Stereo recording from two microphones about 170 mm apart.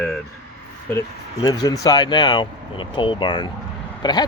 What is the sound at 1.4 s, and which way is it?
Speech, 20° left (ahead or behind).